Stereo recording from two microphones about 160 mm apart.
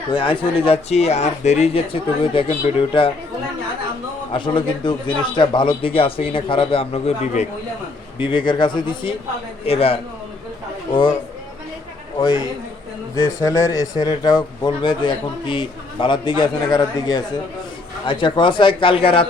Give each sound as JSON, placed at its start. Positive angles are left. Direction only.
{"t": 0.1, "sound": "speech", "side_deg": 35}
{"t": 4.3, "sound": "speech", "side_deg": 30}
{"t": 12.2, "sound": "speech", "side_deg": 25}